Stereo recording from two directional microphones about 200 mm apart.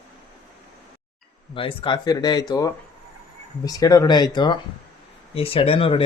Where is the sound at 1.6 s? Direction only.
25° left (ahead or behind).